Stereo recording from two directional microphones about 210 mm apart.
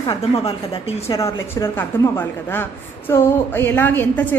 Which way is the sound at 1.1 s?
15° left (ahead or behind).